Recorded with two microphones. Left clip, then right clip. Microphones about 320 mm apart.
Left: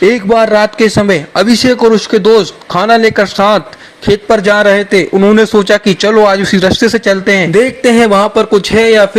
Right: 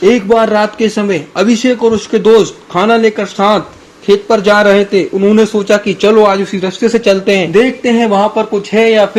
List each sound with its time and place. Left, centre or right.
0.0 s a man's voice: left
7.3 s speech: left
7.5 s a man's voice: left